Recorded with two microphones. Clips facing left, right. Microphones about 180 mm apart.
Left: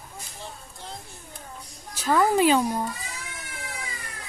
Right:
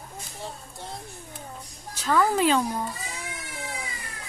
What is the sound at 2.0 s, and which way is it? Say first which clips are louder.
Speech: left 2 dB; 10° left (ahead or behind).